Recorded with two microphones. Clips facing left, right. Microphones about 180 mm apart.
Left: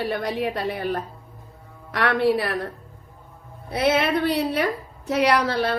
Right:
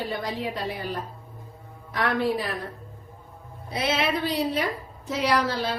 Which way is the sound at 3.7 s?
60° left (ahead or behind).